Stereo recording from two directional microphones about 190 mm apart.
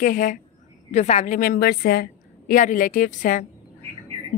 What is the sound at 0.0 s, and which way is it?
A woman's voice, 40° left (ahead or behind).